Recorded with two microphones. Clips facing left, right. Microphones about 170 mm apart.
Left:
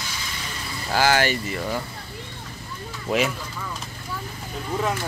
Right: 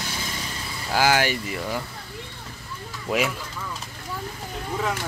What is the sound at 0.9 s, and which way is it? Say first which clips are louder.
Speech: left 1 dB; 10° right (ahead or behind).